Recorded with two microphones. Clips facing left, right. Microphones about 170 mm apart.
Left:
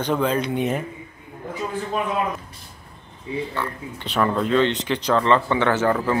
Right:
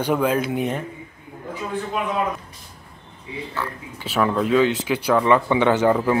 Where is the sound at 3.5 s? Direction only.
5° right (ahead or behind).